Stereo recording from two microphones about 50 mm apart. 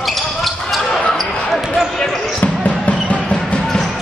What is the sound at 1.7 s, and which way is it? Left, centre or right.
Speech, centre.